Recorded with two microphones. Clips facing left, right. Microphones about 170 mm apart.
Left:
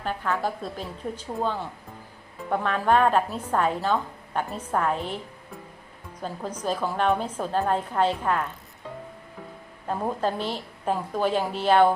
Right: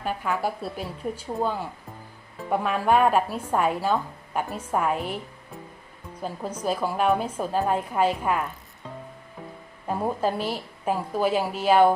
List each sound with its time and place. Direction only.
0.0 s a woman's voice: 10° right (ahead or behind)
9.8 s a woman's voice: 10° right (ahead or behind)